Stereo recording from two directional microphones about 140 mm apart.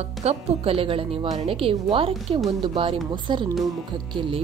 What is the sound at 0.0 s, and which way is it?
Speech, 50° right (ahead or behind).